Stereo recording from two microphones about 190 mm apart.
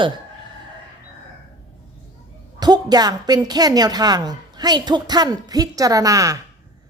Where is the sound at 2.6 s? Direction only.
20° right (ahead or behind).